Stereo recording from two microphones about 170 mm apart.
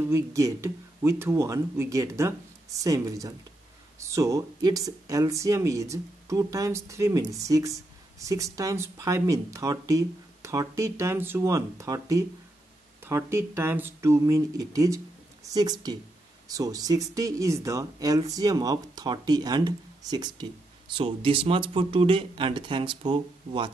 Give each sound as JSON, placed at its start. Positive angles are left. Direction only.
{"t": 0.1, "sound": "speech", "side_deg": -20}